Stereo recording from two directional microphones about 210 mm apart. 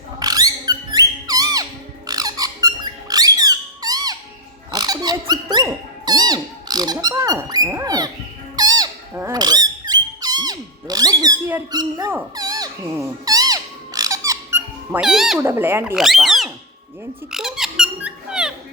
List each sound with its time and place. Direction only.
0.2 s squeak: 15° right (ahead or behind)